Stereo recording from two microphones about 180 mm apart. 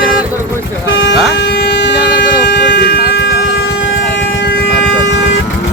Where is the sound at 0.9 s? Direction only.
90° left.